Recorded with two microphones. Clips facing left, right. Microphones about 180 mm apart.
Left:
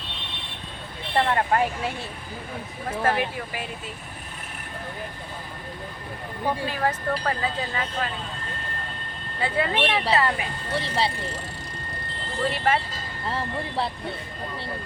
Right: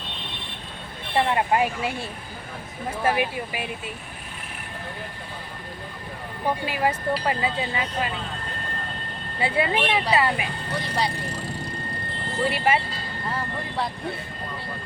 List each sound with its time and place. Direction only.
1.1 s speech: 15° right (ahead or behind)
3.0 s speech: 15° right (ahead or behind)
6.7 s speech: 10° right (ahead or behind)
9.4 s speech: 15° right (ahead or behind)
10.8 s speech: 30° left (ahead or behind)
12.5 s speech: 10° right (ahead or behind)
13.3 s speech: 25° left (ahead or behind)